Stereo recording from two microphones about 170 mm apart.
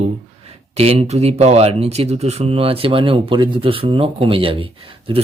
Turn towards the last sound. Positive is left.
turn(degrees=-30)  # may be behind; listen again after turning